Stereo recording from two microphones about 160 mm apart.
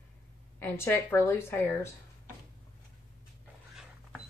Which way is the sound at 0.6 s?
15° left (ahead or behind).